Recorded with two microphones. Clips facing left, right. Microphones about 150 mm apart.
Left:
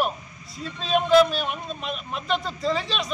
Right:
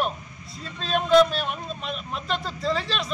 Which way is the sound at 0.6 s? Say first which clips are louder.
Left 3 dB; centre (ahead or behind).